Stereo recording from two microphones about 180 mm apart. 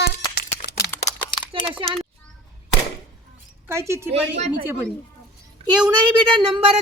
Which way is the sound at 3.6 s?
15° right (ahead or behind).